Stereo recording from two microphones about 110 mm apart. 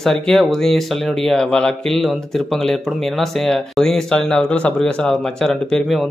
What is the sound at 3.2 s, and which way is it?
Speech, 5° left (ahead or behind).